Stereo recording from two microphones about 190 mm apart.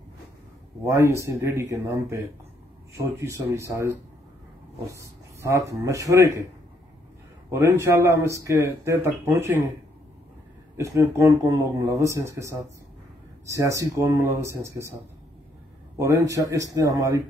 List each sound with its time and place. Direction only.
0.8 s speech: 15° right (ahead or behind)
7.5 s speech: 15° right (ahead or behind)
10.8 s speech: 15° right (ahead or behind)
16.0 s speech: 15° right (ahead or behind)